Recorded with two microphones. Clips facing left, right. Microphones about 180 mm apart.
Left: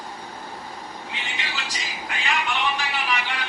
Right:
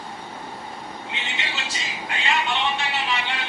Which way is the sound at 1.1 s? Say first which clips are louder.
Right 1 dB; 25° right (ahead or behind).